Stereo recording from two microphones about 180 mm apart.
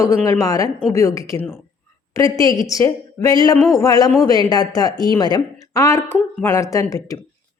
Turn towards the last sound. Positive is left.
turn(degrees=20)  # may be behind; listen again after turning